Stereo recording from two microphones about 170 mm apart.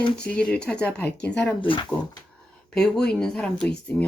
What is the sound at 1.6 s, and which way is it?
Speech, 30° left (ahead or behind).